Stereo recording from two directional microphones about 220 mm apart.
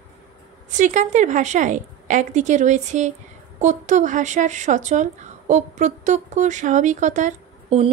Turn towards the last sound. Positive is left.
turn(degrees=-30)  # may be behind; listen again after turning